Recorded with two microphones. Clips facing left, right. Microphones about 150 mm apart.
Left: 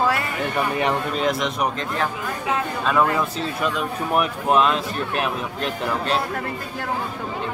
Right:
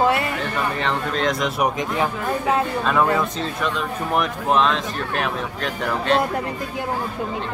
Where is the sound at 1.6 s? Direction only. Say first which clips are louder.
Right 3 dB; 15° right (ahead or behind).